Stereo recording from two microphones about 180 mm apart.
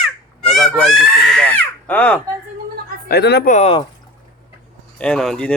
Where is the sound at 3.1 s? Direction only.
65° left (ahead or behind).